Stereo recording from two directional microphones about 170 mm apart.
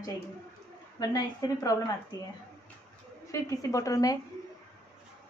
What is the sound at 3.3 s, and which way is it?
Speech, 20° left (ahead or behind).